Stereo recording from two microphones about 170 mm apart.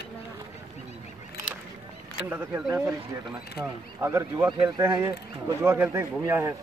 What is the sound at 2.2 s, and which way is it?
Speech, 10° right (ahead or behind).